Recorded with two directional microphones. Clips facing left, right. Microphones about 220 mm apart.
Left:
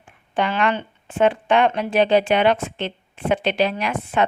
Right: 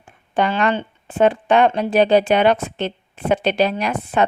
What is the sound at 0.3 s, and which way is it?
Speech, 40° right (ahead or behind).